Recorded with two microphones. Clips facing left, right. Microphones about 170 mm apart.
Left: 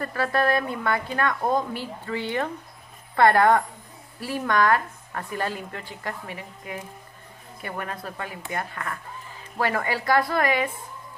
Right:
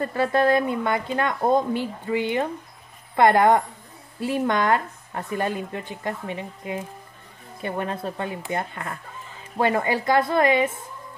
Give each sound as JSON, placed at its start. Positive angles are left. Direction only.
{"t": 0.0, "sound": "speech", "side_deg": -20}